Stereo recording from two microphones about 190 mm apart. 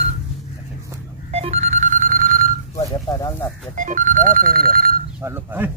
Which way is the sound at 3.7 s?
40° right (ahead or behind).